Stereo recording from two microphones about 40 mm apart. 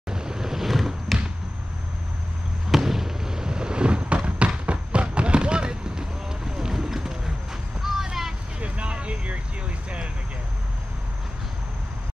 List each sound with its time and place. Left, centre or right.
0.1 s boat: centre
2.7 s fireworks: centre; by 4.5 s right
5.1 s a sound: right; by 8.4 s centre
8.5 s vehicle: right